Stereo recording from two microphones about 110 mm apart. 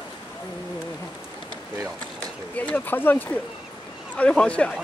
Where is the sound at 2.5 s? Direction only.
15° left (ahead or behind).